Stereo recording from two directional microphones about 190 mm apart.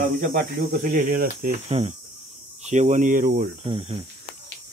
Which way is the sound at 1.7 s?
30° right (ahead or behind).